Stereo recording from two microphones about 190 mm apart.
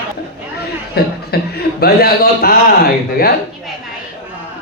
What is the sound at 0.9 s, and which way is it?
A man's voice, 55° left (ahead or behind).